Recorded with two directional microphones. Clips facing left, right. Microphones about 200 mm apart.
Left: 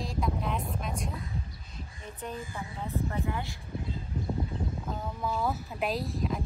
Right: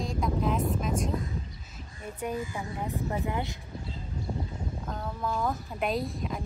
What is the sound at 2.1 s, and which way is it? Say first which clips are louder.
Speech: right 5 dB; 10° right (ahead or behind).